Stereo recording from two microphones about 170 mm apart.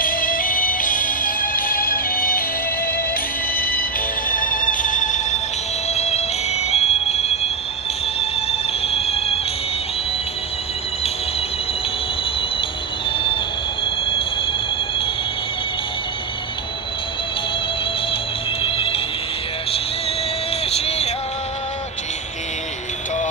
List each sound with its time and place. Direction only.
0.0 s music: 55° left (ahead or behind)
3.5 s music: 60° left (ahead or behind); by 9.4 s 35° left (ahead or behind)
13.8 s train wheels squealing: 30° left (ahead or behind)
18.6 s music: 30° left (ahead or behind)
20.7 s music: 35° left (ahead or behind)